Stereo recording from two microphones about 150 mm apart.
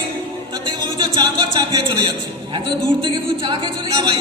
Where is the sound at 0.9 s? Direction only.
25° right (ahead or behind).